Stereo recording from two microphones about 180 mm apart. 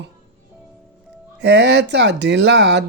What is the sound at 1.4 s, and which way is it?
Speech, 70° right (ahead or behind).